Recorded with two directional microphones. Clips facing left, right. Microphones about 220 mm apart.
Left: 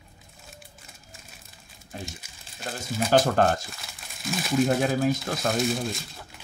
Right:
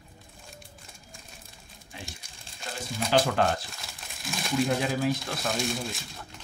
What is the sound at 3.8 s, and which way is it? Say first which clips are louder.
Crumpling: left 2 dB; centre (ahead or behind).